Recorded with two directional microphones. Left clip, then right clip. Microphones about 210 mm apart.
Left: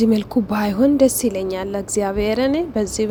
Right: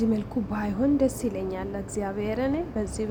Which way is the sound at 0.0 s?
35° left (ahead or behind).